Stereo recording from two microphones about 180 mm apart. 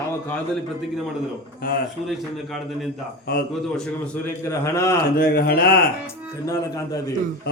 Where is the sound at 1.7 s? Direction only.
50° left (ahead or behind).